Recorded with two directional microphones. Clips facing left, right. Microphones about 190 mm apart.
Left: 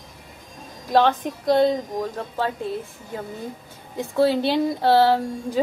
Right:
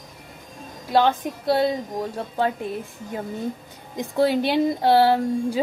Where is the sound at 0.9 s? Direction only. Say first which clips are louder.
Left 1 dB; 5° right (ahead or behind).